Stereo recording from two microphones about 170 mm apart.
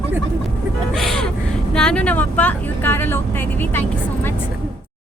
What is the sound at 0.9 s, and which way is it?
Gasp, 5° left (ahead or behind).